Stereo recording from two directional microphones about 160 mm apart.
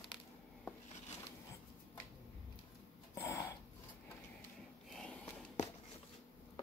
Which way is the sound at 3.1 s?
15° left (ahead or behind).